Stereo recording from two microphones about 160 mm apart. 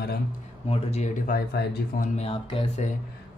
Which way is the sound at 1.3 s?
60° left (ahead or behind).